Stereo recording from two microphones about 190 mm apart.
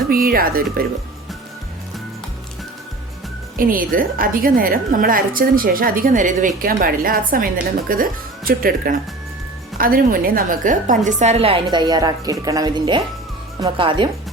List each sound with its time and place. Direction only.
0.1 s a woman's voice: 50° right (ahead or behind)
3.6 s a woman's voice: 45° right (ahead or behind); by 14.1 s 25° right (ahead or behind)